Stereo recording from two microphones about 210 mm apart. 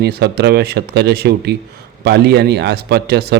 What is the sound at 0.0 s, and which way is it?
A man's voice, 50° right (ahead or behind).